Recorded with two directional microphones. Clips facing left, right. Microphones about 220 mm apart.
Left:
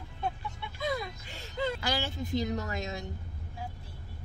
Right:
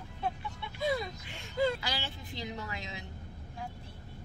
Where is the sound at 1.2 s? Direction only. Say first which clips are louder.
Left 1 dB; 40° left (ahead or behind).